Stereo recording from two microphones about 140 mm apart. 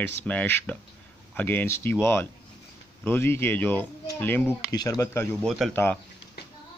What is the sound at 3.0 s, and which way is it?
Speech, 15° left (ahead or behind).